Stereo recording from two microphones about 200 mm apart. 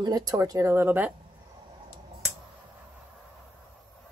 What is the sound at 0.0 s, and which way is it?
Speech, 20° right (ahead or behind).